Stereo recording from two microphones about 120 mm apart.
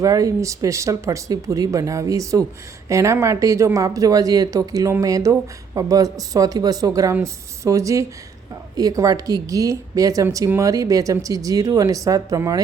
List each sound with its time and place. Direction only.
0.0 s speech: 30° right (ahead or behind)